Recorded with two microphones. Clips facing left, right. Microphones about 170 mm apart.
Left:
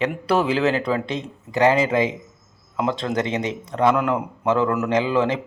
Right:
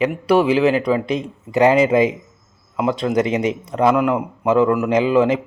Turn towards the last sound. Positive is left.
turn(degrees=-15)  # may be behind; listen again after turning